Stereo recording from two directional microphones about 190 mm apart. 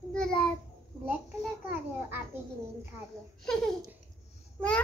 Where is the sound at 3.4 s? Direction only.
Centre (ahead or behind).